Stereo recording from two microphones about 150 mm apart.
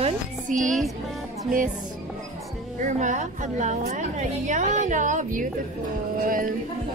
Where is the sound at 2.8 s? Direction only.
55° right (ahead or behind).